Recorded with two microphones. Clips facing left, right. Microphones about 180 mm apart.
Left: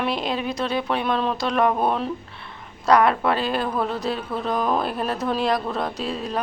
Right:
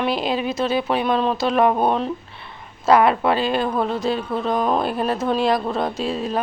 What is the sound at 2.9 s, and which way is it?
Speech, 5° right (ahead or behind).